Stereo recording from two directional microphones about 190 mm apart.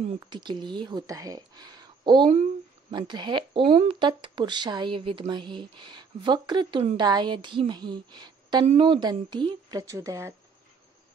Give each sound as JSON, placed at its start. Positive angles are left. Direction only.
{"t": 0.3, "sound": "speech", "side_deg": -25}